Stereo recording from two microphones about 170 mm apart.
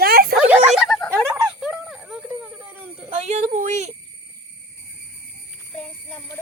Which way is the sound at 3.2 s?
45° right (ahead or behind).